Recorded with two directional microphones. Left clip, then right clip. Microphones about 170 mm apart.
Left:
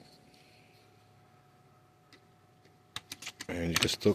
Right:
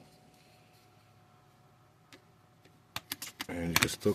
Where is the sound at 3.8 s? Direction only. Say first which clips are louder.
Left 3 dB; 10° left (ahead or behind).